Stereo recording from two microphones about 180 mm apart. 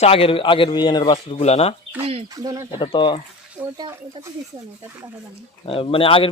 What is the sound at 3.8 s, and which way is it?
Speech, 20° right (ahead or behind).